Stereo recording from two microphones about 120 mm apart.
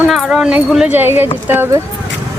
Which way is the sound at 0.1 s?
Centre (ahead or behind).